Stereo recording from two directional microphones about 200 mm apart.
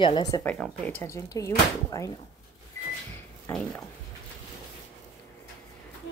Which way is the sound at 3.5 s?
5° left (ahead or behind).